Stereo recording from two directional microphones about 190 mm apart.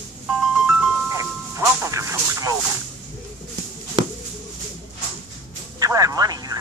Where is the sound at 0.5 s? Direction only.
5° right (ahead or behind).